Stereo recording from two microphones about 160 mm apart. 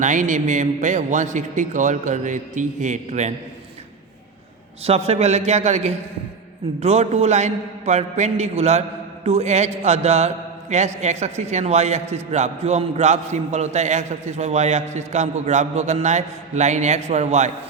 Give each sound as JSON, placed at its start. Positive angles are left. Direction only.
{"t": 0.0, "sound": "a man's voice", "side_deg": -50}
{"t": 4.9, "sound": "a man's voice", "side_deg": -40}